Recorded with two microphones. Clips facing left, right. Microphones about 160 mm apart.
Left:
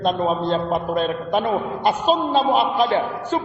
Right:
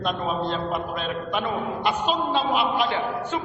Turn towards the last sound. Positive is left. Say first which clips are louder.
# left 5 dB
turn(degrees=35)  # may be behind; listen again after turning